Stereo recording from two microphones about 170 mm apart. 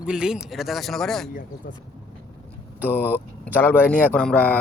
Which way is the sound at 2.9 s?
10° left (ahead or behind).